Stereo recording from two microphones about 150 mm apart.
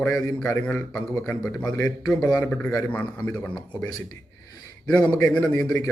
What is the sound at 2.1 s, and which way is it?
A man's voice, 5° left (ahead or behind).